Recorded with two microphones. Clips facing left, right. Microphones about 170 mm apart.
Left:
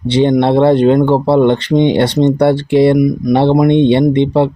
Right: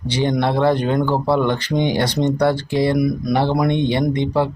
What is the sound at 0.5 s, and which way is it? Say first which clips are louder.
Speech: left 9 dB; 65° left (ahead or behind).